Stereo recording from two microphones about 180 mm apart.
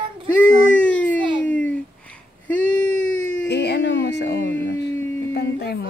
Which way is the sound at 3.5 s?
70° left (ahead or behind).